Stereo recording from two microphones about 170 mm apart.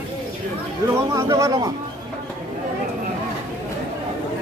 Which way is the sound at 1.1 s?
20° right (ahead or behind).